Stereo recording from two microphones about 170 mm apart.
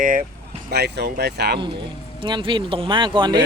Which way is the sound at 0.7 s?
70° right (ahead or behind).